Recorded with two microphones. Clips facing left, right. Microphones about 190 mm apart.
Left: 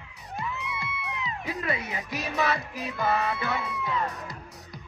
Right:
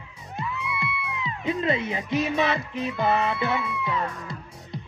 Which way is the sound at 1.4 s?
25° right (ahead or behind).